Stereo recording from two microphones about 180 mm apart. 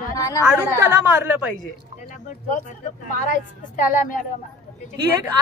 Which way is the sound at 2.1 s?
45° left (ahead or behind).